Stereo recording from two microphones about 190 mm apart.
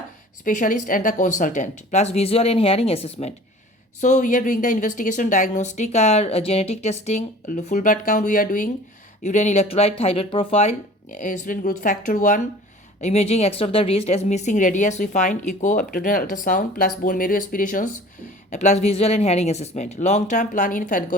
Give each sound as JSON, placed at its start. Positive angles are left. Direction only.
{"t": 0.4, "sound": "speech", "side_deg": 45}